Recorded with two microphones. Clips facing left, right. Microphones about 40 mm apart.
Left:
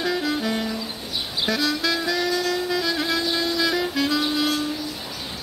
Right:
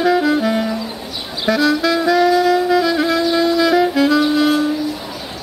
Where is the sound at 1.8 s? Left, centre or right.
Centre.